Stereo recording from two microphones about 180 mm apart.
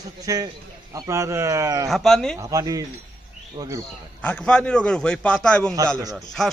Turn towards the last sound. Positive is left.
turn(degrees=0)  # may be behind; listen again after turning